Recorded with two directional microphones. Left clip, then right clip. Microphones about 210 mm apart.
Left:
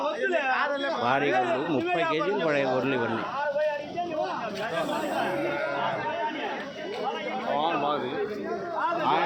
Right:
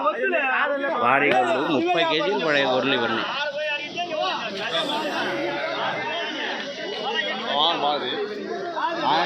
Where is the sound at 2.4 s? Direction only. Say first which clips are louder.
Right 5 dB; 5° left (ahead or behind).